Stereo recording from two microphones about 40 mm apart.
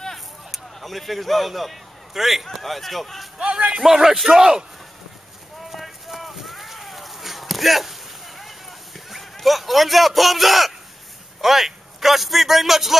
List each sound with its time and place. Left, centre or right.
0.0 s a sound: centre
2.6 s a man's voice: centre
3.3 s speech: right
3.8 s a man's voice: centre
5.7 s a sound: centre
9.1 s a man's voice: centre